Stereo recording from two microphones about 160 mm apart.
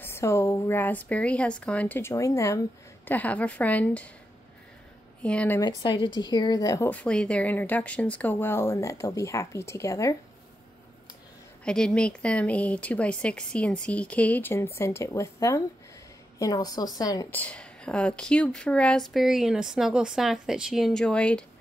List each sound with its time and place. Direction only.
0.0 s speech: 15° left (ahead or behind)
5.2 s speech: 5° left (ahead or behind)
5.6 s speech: 25° left (ahead or behind)
11.6 s a woman's voice: 5° left (ahead or behind); by 17.3 s 25° left (ahead or behind)
17.3 s speech: 10° left (ahead or behind)